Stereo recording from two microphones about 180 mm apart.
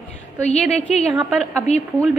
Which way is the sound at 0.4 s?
40° left (ahead or behind).